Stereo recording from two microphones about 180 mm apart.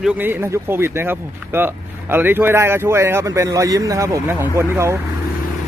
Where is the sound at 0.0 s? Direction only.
10° right (ahead or behind).